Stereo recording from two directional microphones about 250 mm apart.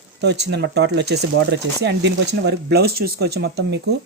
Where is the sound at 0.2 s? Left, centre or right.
Right.